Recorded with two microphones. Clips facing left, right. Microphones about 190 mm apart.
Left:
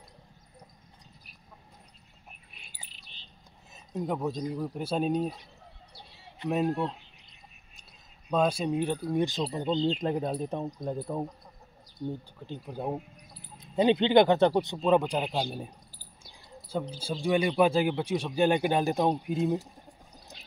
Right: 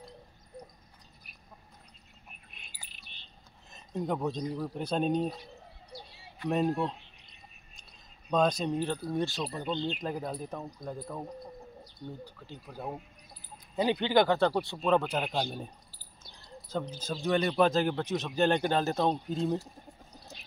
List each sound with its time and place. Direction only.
3.7 s speech: 5° left (ahead or behind)
8.3 s speech: 5° left (ahead or behind); by 11.0 s 25° left (ahead or behind)
12.4 s speech: 25° left (ahead or behind); by 15.7 s 5° left (ahead or behind)
16.3 s a sound: 10° left (ahead or behind)
16.9 s speech: 10° left (ahead or behind)